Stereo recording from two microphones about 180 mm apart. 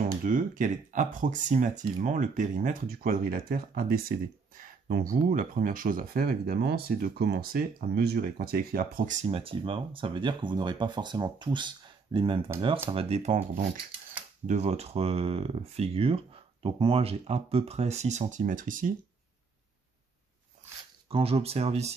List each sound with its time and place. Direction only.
0.2 s speech: 50° right (ahead or behind)
21.1 s speech: 35° right (ahead or behind)